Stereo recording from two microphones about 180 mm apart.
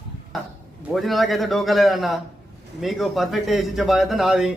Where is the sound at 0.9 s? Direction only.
Centre (ahead or behind).